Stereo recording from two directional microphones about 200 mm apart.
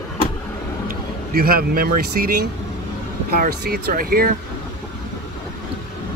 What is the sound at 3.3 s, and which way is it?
Speech, 50° right (ahead or behind).